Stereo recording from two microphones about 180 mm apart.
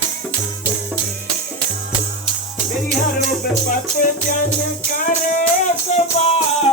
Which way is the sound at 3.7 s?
50° left (ahead or behind).